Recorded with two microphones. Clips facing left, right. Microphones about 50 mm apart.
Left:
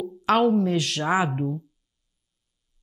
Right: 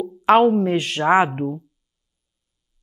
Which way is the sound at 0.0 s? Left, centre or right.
Right.